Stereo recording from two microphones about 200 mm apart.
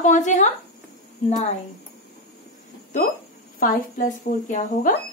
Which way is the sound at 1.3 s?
35° left (ahead or behind).